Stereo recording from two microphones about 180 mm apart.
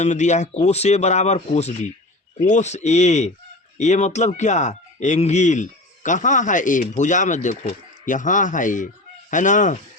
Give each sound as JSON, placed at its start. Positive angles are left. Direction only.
{"t": 0.0, "sound": "speech", "side_deg": 40}